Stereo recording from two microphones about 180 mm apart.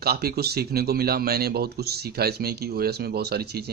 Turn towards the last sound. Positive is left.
turn(degrees=-60)  # may be behind; listen again after turning